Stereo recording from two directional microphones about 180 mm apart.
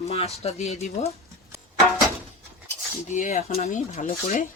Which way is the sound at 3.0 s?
45° left (ahead or behind).